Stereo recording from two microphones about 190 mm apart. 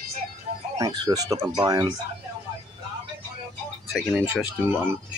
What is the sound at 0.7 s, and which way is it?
Speech, 20° right (ahead or behind).